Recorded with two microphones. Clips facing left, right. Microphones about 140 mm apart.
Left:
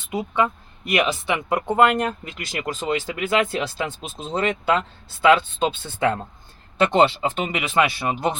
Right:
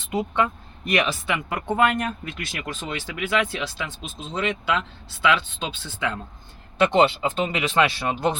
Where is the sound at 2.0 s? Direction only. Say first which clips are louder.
Left 3 dB; 40° left (ahead or behind).